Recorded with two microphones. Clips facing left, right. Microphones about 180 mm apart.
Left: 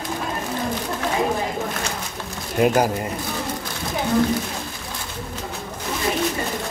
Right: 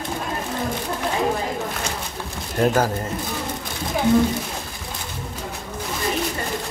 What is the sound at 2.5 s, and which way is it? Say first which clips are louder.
Speech: left 1 dB; 10° left (ahead or behind).